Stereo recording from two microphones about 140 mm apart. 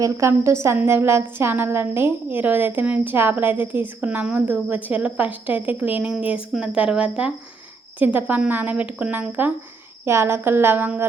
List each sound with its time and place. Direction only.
0.0 s a woman's voice: 20° right (ahead or behind)